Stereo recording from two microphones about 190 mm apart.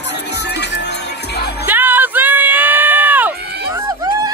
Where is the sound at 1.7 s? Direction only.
10° right (ahead or behind).